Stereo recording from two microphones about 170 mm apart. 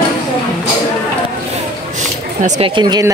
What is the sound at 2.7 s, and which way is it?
Speech, 25° right (ahead or behind).